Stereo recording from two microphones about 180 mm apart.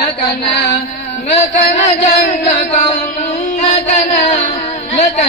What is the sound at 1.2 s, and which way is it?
Music, 40° left (ahead or behind).